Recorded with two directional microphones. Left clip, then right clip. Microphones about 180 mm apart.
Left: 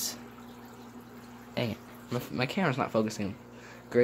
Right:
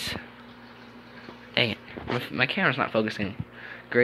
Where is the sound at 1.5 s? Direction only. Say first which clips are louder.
Right 9 dB; 5° left (ahead or behind).